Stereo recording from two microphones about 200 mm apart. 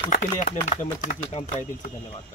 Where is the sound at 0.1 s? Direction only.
40° left (ahead or behind).